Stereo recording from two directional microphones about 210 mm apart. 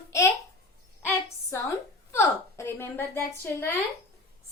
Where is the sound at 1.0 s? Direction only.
15° left (ahead or behind).